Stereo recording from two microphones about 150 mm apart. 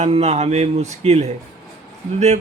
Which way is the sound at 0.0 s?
45° right (ahead or behind).